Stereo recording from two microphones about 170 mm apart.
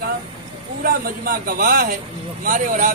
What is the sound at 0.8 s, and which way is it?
Speech, 55° right (ahead or behind).